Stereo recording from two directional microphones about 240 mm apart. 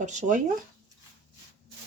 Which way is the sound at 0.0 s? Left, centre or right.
Right.